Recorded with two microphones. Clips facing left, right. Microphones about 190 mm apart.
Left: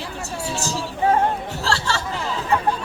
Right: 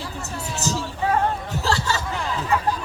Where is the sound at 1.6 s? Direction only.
15° right (ahead or behind).